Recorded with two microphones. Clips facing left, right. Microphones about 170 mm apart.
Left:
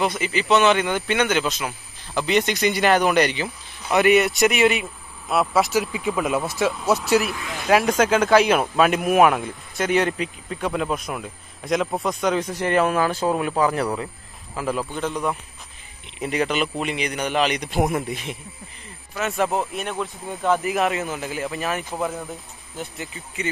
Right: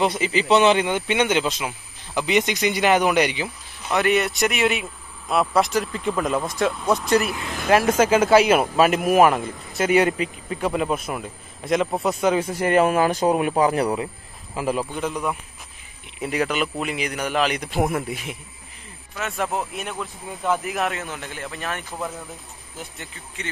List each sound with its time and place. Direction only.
0.0 s speech: 30° right (ahead or behind)
2.1 s speech: 15° right (ahead or behind)
3.9 s speech: 5° left (ahead or behind)
22.9 s speech: 10° left (ahead or behind)